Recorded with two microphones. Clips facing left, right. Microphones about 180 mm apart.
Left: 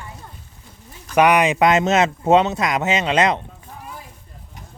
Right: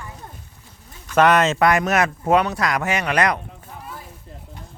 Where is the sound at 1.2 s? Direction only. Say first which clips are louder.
Left 1 dB; 15° left (ahead or behind).